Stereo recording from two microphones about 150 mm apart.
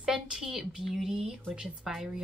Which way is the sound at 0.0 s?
5° right (ahead or behind).